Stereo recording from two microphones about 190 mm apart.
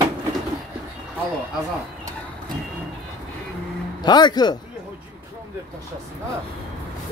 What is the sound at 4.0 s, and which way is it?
Speech, 20° left (ahead or behind).